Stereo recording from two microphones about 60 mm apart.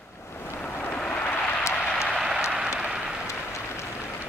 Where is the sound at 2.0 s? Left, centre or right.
Centre.